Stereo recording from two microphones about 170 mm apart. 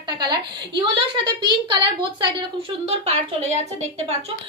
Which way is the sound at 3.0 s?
40° right (ahead or behind).